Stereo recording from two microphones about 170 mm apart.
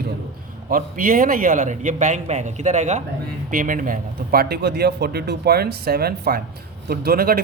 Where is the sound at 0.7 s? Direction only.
55° right (ahead or behind).